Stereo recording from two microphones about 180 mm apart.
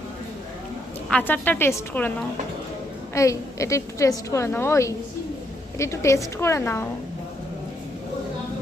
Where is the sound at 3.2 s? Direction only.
15° left (ahead or behind).